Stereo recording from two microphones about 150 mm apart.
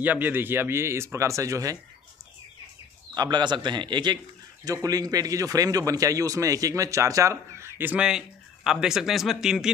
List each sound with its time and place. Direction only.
0.0 s speech: 10° right (ahead or behind)
3.2 s a man's voice: 30° right (ahead or behind); by 9.7 s 5° right (ahead or behind)